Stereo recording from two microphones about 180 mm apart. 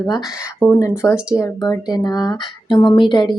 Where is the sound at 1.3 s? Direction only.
15° left (ahead or behind).